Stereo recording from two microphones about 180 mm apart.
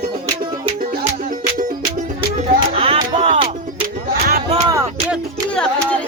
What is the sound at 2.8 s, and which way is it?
Music, 35° right (ahead or behind).